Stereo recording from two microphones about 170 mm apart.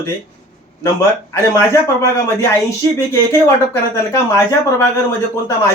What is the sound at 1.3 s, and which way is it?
A man's voice, 15° left (ahead or behind).